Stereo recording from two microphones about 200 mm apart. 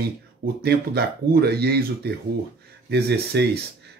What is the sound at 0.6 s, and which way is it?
Speech, 55° right (ahead or behind).